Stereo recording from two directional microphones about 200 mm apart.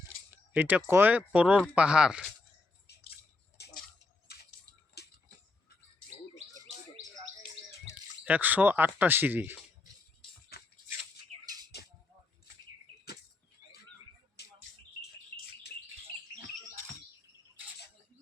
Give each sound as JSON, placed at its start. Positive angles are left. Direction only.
{"t": 0.3, "sound": "speech", "side_deg": -10}
{"t": 3.6, "sound": "drip", "side_deg": 55}
{"t": 5.0, "sound": "a sound", "side_deg": 55}
{"t": 8.2, "sound": "speech", "side_deg": -10}
{"t": 10.5, "sound": "a sound", "side_deg": 50}
{"t": 14.4, "sound": "bird", "side_deg": 55}